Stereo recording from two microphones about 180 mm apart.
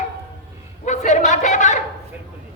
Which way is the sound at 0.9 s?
40° left (ahead or behind).